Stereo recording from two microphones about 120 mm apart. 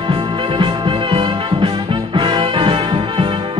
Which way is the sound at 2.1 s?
40° right (ahead or behind).